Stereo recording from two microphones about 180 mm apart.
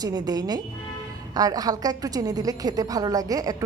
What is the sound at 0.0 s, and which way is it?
A woman's voice, 20° right (ahead or behind).